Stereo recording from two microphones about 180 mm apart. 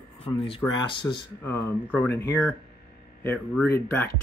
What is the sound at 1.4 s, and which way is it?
Speech, 10° left (ahead or behind).